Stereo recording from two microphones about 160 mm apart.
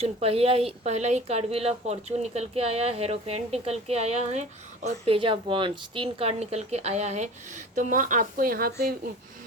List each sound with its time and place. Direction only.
0.0 s speech: 40° right (ahead or behind); by 9.0 s 65° right (ahead or behind)